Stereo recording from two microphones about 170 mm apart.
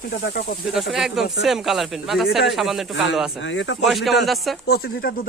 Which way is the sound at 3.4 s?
90° left.